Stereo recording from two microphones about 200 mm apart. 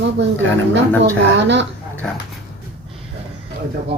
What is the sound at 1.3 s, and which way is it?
Speech, 60° right (ahead or behind).